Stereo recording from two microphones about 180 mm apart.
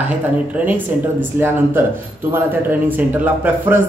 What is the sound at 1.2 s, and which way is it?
A man's voice, 10° right (ahead or behind).